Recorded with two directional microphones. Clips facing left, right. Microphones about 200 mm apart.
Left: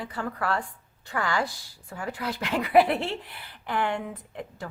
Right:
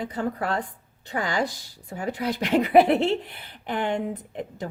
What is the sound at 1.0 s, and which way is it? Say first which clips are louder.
Speech: right 2 dB; 20° right (ahead or behind).